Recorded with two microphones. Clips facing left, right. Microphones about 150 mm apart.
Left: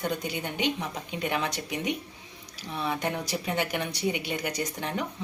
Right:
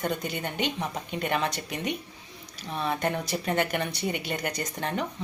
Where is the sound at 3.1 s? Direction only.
10° left (ahead or behind).